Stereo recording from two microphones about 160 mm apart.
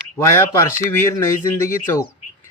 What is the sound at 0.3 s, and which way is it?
Speech, 15° left (ahead or behind).